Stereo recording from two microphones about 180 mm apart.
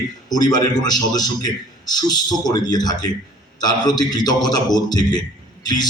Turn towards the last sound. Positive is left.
turn(degrees=20)  # may be behind; listen again after turning